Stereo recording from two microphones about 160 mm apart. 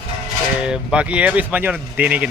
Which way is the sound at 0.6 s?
5° right (ahead or behind).